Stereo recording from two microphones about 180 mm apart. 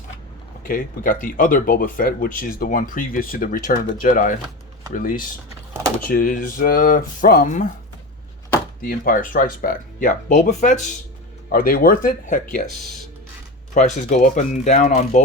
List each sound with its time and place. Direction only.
0.6 s speech: 50° left (ahead or behind)
8.8 s speech: 50° left (ahead or behind)
12.8 s speech: centre (ahead or behind)
13.7 s speech: 40° left (ahead or behind)